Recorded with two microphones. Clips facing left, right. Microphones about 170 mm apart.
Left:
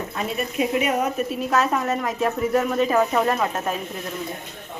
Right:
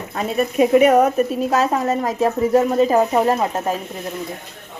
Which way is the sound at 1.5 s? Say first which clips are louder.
Right 3 dB; 30° right (ahead or behind).